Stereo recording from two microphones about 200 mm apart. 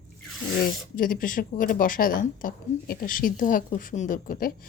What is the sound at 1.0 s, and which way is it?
Speech, 45° left (ahead or behind).